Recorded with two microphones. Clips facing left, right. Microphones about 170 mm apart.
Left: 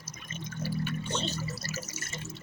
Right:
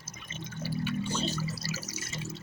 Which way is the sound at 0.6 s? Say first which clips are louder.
Even; 45° left (ahead or behind).